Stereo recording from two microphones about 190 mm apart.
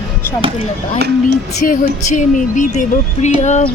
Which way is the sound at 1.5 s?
45° left (ahead or behind).